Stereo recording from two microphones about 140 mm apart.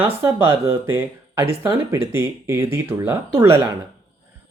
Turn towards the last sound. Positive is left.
turn(degrees=-20)  # may be behind; listen again after turning